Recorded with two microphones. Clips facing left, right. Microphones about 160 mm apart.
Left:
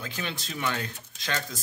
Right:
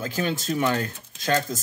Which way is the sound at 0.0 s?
45° right (ahead or behind).